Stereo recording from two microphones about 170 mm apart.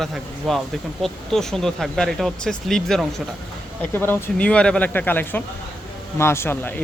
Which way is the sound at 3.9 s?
10° left (ahead or behind).